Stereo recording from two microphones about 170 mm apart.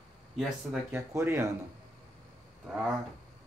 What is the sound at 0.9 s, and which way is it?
Speech, 15° right (ahead or behind).